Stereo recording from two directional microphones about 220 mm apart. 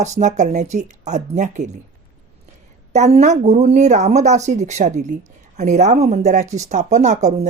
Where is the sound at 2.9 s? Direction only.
30° right (ahead or behind).